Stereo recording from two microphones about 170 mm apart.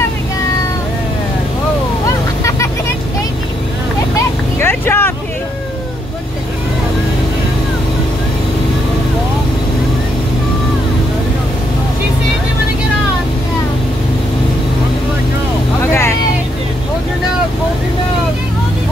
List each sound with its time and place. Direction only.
4.6 s vehicle: 15° left (ahead or behind)
15.8 s vehicle: 15° left (ahead or behind)